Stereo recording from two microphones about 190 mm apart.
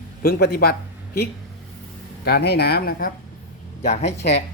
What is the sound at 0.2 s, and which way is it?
Speech, 55° left (ahead or behind).